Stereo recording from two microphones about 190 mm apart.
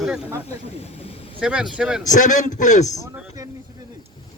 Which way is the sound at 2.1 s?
40° left (ahead or behind).